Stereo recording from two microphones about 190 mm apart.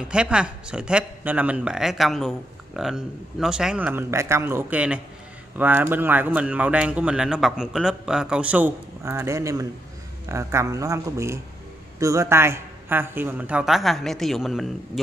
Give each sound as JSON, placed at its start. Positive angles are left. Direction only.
{"t": 0.1, "sound": "speech", "side_deg": -5}